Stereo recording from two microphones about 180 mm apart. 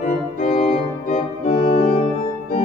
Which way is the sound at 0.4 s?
40° left (ahead or behind).